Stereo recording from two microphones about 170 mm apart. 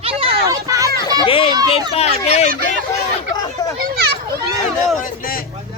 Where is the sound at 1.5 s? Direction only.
25° right (ahead or behind).